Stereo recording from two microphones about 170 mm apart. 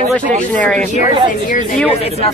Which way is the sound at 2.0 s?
35° left (ahead or behind).